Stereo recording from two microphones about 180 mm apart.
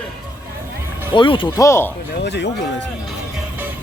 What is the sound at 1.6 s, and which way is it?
Speech, 15° left (ahead or behind).